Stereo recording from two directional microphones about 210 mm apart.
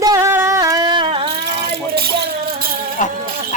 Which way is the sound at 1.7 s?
50° right (ahead or behind).